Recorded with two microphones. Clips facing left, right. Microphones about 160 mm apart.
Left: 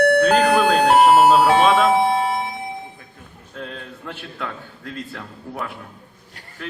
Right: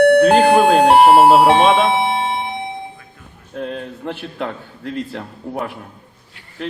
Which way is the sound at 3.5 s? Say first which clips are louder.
Right 8 dB; 40° right (ahead or behind).